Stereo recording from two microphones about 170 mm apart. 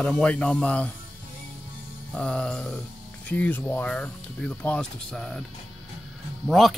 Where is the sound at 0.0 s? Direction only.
5° left (ahead or behind).